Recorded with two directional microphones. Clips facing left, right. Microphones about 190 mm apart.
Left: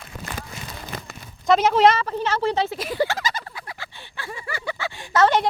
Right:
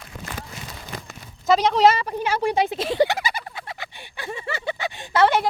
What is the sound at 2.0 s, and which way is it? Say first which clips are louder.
Speech: even; 15° right (ahead or behind).